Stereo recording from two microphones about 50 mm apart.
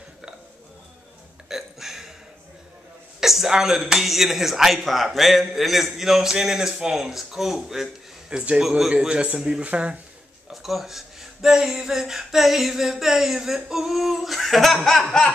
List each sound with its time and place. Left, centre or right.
1.5 s hiccup: centre
3.2 s speech: centre
8.3 s a man's voice: right
8.6 s a man's voice: centre
9.0 s a man's voice: centre
10.5 s speech: centre